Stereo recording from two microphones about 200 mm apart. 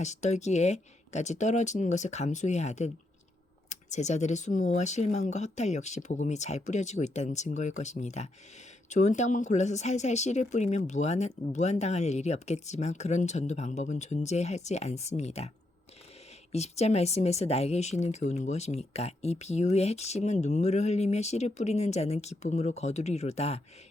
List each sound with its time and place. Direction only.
0.0 s speech: 35° left (ahead or behind)
16.5 s speech: 35° left (ahead or behind)